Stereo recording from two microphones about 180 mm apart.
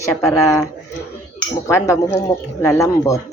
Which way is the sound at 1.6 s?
15° left (ahead or behind).